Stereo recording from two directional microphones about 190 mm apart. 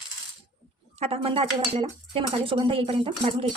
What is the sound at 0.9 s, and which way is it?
Speech, 30° right (ahead or behind).